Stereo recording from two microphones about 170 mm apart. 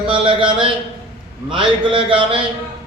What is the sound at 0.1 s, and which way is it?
A man's voice, 30° right (ahead or behind).